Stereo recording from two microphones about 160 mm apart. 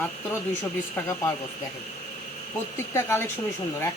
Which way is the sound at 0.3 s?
15° left (ahead or behind).